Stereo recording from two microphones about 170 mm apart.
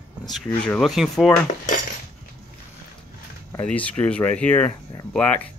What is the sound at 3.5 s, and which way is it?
Speech, 10° left (ahead or behind).